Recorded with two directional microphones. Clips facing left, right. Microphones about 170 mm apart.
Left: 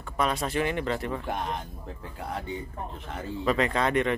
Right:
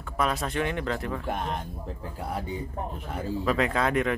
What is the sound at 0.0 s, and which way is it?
Speech, centre (ahead or behind).